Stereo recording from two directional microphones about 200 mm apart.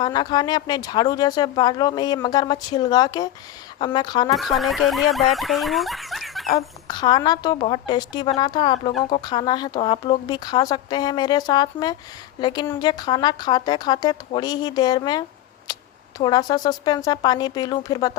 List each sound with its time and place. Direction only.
0.0 s speech: 20° left (ahead or behind)
4.4 s speech: centre (ahead or behind)
6.5 s speech: 25° left (ahead or behind)
12.6 s a woman's voice: 10° left (ahead or behind)
12.9 s speech: 20° left (ahead or behind)